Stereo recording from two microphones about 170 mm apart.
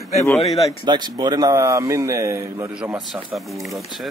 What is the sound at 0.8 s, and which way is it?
Speech, 25° right (ahead or behind).